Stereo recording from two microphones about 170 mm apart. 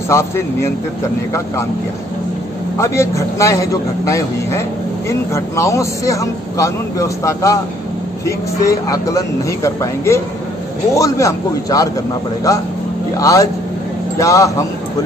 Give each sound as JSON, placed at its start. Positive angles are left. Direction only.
{"t": 0.1, "sound": "speech", "side_deg": 15}
{"t": 2.8, "sound": "a man's voice", "side_deg": 15}
{"t": 13.2, "sound": "a man's voice", "side_deg": 20}